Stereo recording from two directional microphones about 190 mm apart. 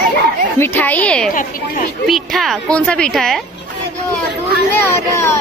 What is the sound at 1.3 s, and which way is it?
Speech, 45° left (ahead or behind).